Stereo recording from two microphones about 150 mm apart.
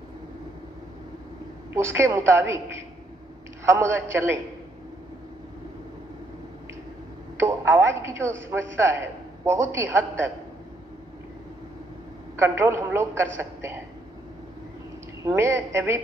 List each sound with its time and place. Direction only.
1.7 s a woman's voice: 15° right (ahead or behind)
3.6 s a woman's voice: 15° right (ahead or behind)
7.3 s a woman's voice: 15° right (ahead or behind)
12.4 s a woman's voice: 15° right (ahead or behind)
15.2 s a woman's voice: 15° right (ahead or behind)